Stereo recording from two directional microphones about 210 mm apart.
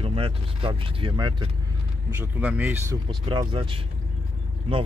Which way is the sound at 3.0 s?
25° right (ahead or behind).